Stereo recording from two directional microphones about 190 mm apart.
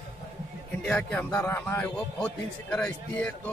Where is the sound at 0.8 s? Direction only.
5° left (ahead or behind).